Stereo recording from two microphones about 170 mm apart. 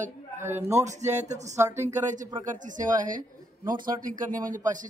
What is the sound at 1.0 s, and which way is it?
Speech, 45° right (ahead or behind).